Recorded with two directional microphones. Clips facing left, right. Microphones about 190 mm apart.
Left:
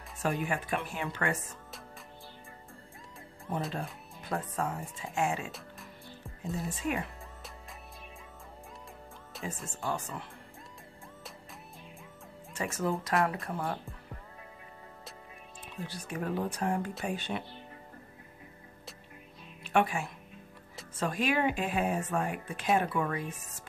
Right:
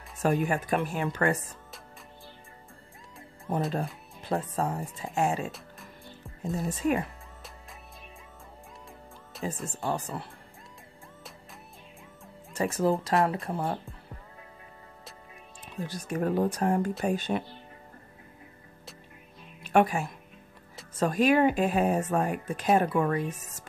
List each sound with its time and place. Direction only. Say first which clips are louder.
0.2 s speech: right 6 dB; 40° right (ahead or behind)
3.5 s speech: right 6 dB; 40° right (ahead or behind)
6.5 s speech: right 6 dB; 40° right (ahead or behind)
9.3 s music: right 5 dB; centre (ahead or behind)
9.7 s speech: right 2 dB; 35° right (ahead or behind)
12.5 s speech: right 6 dB; 35° right (ahead or behind)
15.8 s speech: right 7 dB; 45° right (ahead or behind)
19.6 s a woman's voice: right 5 dB; 40° right (ahead or behind)